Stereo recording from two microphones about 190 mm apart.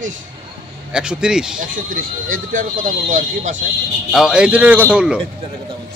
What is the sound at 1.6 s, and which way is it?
Speech, 45° right (ahead or behind).